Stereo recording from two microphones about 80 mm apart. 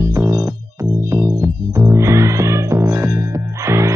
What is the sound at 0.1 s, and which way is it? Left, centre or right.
Music, right.